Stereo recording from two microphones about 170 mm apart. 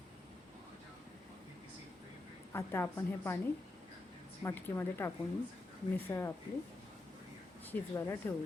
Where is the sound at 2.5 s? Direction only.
15° left (ahead or behind).